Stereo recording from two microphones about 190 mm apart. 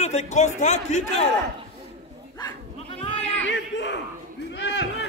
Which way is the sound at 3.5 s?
70° left (ahead or behind).